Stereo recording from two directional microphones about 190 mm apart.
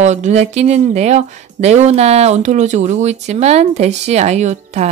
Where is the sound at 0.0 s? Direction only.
40° right (ahead or behind).